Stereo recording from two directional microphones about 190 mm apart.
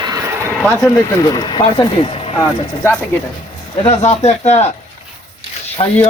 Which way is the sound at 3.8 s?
35° left (ahead or behind).